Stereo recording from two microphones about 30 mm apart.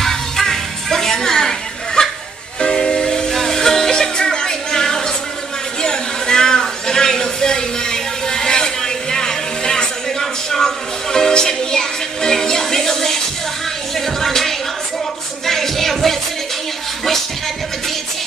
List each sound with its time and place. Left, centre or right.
0.0 s music: centre
2.0 s a sound: left
2.6 s train: left
3.3 s music: centre
5.8 s a sound: left
10.5 s music: centre